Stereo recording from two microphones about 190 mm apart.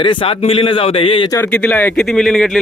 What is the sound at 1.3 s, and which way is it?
Speech, 10° left (ahead or behind).